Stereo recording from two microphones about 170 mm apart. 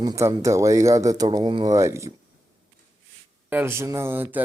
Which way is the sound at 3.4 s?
15° right (ahead or behind).